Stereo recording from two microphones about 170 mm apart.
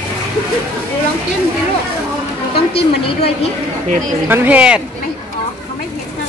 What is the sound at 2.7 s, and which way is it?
Speech, 35° left (ahead or behind).